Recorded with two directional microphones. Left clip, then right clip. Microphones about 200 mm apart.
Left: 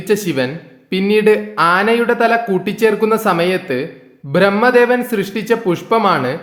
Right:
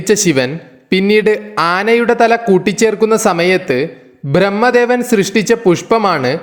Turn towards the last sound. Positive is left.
turn(degrees=-30)  # may be behind; listen again after turning